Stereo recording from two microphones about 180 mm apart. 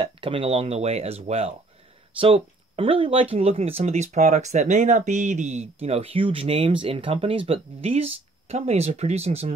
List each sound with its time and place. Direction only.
0.0 s speech: 30° right (ahead or behind)